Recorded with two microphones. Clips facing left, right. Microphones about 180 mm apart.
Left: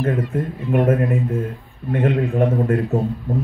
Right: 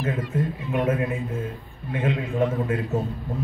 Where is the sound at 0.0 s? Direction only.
55° left (ahead or behind).